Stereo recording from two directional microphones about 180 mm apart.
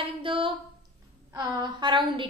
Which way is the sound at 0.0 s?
30° right (ahead or behind).